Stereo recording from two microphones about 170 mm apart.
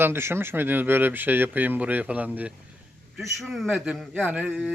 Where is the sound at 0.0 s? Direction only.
15° right (ahead or behind).